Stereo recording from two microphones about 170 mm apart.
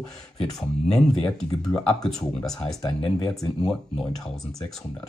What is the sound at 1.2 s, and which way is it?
Speech, 5° left (ahead or behind).